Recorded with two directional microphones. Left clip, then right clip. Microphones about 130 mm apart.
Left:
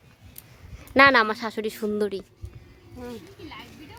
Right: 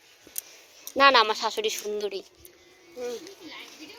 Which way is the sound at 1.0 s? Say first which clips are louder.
Left 2 dB; 25° left (ahead or behind).